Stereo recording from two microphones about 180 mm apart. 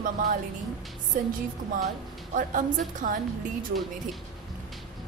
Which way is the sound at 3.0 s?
45° right (ahead or behind).